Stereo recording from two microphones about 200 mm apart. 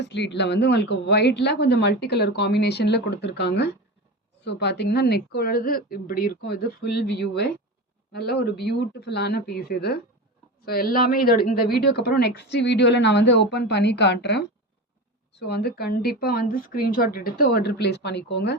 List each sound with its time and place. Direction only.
0.0 s a woman's voice: 60° left (ahead or behind)